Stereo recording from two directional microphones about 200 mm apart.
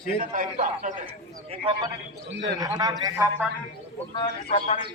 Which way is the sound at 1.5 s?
25° right (ahead or behind).